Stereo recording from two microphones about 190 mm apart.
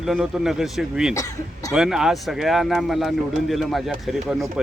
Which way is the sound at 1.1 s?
15° left (ahead or behind).